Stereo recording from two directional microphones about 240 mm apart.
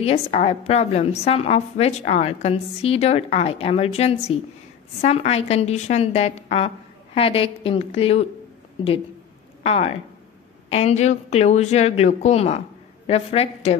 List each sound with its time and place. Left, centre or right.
0.0 s a woman's voice: left
9.6 s a woman's voice: left